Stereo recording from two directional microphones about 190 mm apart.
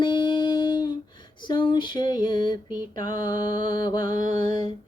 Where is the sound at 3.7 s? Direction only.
20° left (ahead or behind).